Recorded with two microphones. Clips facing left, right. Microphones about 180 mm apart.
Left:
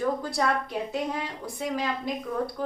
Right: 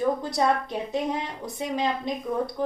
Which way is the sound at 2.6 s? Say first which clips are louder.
Right 5 dB; 20° right (ahead or behind).